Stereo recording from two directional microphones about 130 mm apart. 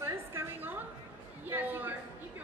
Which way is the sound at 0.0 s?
20° right (ahead or behind).